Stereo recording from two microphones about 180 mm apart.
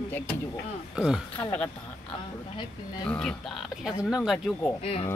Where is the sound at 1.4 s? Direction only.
10° left (ahead or behind).